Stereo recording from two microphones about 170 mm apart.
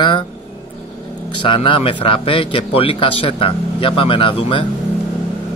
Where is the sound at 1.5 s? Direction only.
30° left (ahead or behind).